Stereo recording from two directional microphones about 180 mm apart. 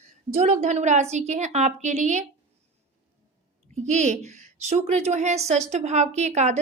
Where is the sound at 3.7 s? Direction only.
40° right (ahead or behind).